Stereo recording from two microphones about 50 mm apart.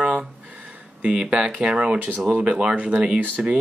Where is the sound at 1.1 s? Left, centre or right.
Centre.